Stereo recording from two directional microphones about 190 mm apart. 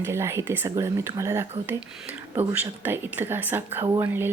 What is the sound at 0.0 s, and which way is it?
Speech, 15° right (ahead or behind).